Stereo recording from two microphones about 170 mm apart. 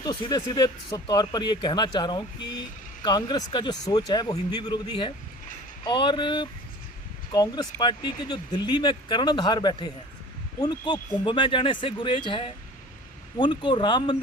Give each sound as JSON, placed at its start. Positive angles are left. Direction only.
{"t": 0.0, "sound": "speech", "side_deg": 25}